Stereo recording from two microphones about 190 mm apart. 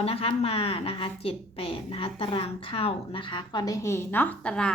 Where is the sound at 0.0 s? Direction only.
30° left (ahead or behind).